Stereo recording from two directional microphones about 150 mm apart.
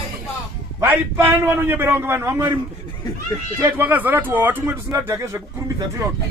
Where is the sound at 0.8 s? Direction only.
15° right (ahead or behind).